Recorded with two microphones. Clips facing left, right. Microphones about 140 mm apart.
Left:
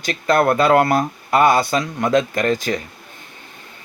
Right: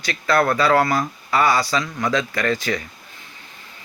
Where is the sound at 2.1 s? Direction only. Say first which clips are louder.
Left 5 dB; 45° left (ahead or behind).